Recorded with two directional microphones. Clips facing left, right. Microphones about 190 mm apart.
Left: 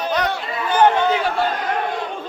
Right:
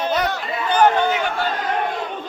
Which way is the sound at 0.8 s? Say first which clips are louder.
Left 1 dB; 30° left (ahead or behind).